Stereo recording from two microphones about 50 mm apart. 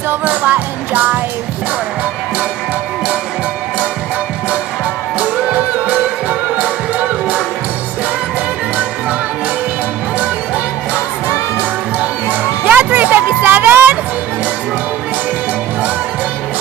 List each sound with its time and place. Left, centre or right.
0.2 s music: right
5.5 s music: right
12.6 s music: right